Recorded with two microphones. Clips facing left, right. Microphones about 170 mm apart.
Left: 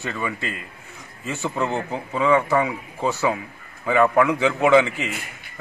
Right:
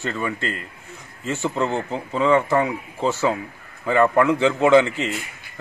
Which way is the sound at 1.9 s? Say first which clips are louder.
Right 1 dB; 10° left (ahead or behind).